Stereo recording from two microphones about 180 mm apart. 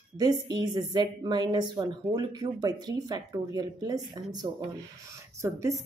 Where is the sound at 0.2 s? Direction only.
20° right (ahead or behind).